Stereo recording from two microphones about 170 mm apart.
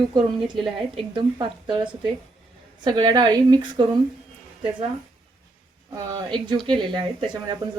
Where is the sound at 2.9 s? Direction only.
25° right (ahead or behind).